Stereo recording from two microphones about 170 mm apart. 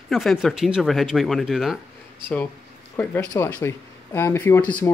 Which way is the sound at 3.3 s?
20° left (ahead or behind).